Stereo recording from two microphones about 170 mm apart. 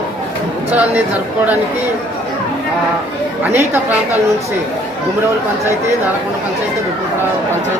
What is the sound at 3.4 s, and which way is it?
Speech, 10° right (ahead or behind).